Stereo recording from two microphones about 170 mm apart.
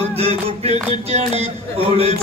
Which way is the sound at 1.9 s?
35° right (ahead or behind).